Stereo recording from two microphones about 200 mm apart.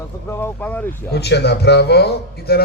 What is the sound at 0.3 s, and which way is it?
Speech, 10° left (ahead or behind).